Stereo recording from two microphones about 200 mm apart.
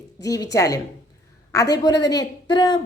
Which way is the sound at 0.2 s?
15° left (ahead or behind).